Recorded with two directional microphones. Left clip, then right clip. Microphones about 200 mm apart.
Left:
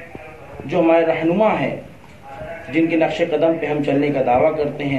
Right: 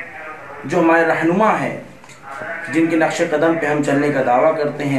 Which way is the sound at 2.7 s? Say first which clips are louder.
Right 1 dB; 40° right (ahead or behind).